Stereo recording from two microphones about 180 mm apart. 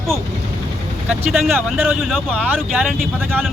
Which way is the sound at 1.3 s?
Centre (ahead or behind).